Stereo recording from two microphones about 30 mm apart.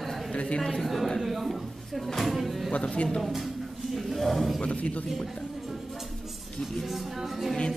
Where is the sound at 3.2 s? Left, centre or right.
Centre.